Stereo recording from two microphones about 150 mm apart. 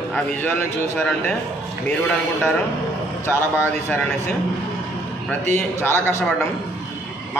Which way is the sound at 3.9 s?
10° left (ahead or behind).